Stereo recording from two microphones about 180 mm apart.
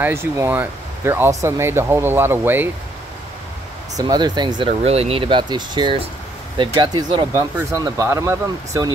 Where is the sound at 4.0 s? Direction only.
25° right (ahead or behind).